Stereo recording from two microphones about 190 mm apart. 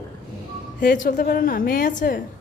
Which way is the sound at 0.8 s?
45° left (ahead or behind).